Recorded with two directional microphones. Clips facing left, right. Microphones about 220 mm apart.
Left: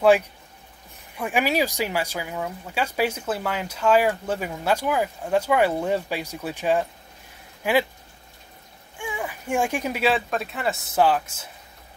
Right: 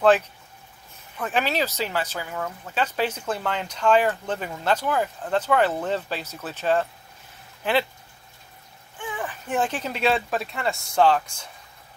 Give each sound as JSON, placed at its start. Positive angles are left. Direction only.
{"t": 1.1, "sound": "speech", "side_deg": 10}
{"t": 8.9, "sound": "speech", "side_deg": 10}